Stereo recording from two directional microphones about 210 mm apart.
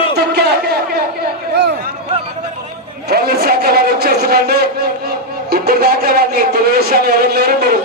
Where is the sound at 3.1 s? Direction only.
50° right (ahead or behind).